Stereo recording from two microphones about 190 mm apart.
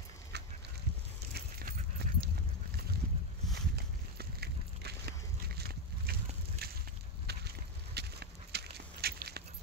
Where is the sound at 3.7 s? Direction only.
60° right (ahead or behind).